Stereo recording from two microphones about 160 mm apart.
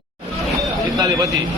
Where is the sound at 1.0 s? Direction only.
25° right (ahead or behind).